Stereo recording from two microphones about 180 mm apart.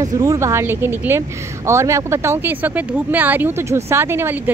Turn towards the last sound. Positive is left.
turn(degrees=-15)  # may be behind; listen again after turning